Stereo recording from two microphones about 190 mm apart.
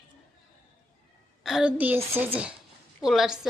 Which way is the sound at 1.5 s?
5° right (ahead or behind).